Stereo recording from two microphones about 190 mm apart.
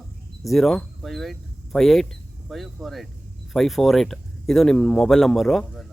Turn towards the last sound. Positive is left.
turn(degrees=0)  # may be behind; listen again after turning